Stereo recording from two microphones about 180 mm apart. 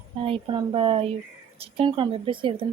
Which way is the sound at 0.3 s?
30° right (ahead or behind).